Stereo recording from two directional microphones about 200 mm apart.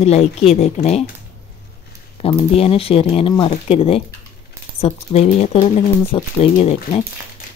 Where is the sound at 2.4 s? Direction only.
30° left (ahead or behind).